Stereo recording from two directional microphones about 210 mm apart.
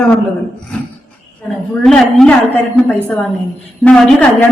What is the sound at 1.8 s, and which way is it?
A woman's voice, 5° left (ahead or behind).